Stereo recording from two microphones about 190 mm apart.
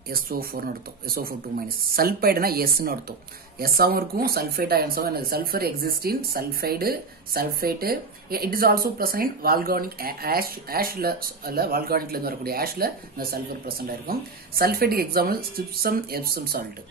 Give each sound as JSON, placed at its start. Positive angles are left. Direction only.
{"t": 0.1, "sound": "speech", "side_deg": -50}